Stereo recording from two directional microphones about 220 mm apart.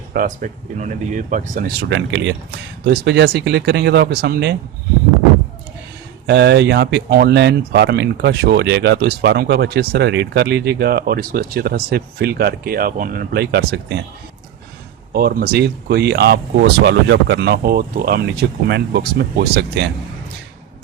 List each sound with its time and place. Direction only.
0.1 s speech: 40° right (ahead or behind)
6.2 s speech: 50° right (ahead or behind)
15.1 s speech: 45° right (ahead or behind)